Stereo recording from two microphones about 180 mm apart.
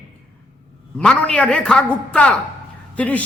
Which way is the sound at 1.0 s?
5° left (ahead or behind).